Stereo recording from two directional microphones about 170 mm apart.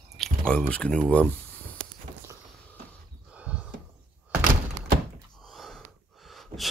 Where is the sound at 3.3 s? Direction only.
10° right (ahead or behind).